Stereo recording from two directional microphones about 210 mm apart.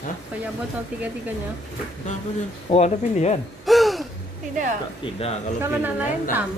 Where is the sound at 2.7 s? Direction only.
30° left (ahead or behind).